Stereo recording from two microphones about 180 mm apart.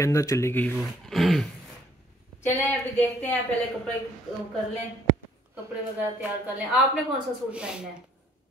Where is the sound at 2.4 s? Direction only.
10° left (ahead or behind).